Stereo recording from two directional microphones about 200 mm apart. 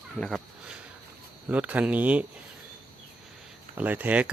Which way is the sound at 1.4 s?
5° right (ahead or behind).